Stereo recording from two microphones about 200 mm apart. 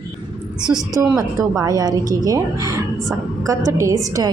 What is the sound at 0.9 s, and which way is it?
A woman's voice, 15° right (ahead or behind).